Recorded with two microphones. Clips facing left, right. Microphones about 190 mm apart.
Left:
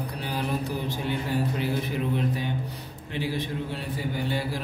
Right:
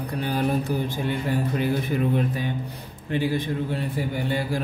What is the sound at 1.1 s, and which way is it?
Speech, 55° right (ahead or behind).